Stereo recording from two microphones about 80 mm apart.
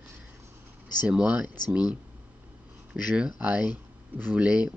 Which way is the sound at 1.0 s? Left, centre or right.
Centre.